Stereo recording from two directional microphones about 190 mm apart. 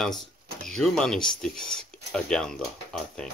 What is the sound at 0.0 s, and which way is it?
Speech, centre (ahead or behind).